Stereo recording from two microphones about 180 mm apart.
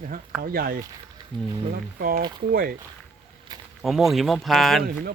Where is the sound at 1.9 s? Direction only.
55° right (ahead or behind).